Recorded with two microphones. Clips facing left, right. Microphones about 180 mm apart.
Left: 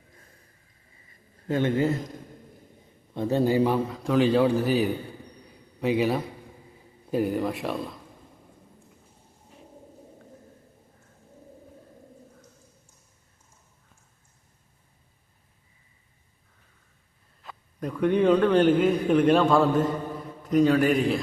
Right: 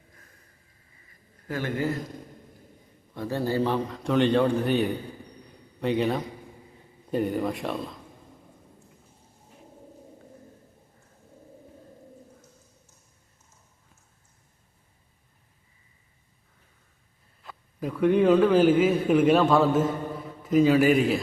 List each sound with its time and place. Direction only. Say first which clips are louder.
1.5 s a man's voice: left 5 dB; 25° left (ahead or behind)
3.2 s a man's voice: left 4 dB; 20° left (ahead or behind); by 7.9 s centre (ahead or behind)
17.7 s a man's voice: right 1 dB; 5° right (ahead or behind)